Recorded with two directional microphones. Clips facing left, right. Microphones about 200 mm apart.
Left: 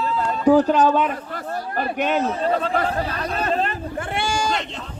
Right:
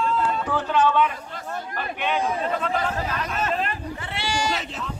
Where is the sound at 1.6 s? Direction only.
35° left (ahead or behind).